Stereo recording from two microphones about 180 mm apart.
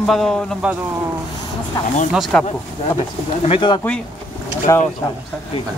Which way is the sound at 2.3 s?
5° left (ahead or behind).